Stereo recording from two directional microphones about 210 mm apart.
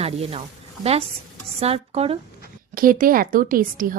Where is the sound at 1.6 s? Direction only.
30° right (ahead or behind).